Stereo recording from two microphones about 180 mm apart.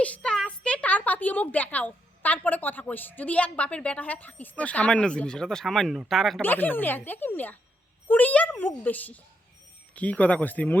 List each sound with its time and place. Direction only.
0.0 s a woman's voice: 5° left (ahead or behind)